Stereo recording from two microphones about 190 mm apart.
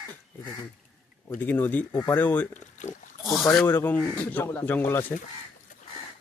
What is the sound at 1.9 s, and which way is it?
Speech, 20° left (ahead or behind).